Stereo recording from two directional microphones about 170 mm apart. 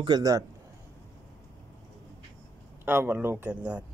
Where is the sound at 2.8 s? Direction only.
10° right (ahead or behind).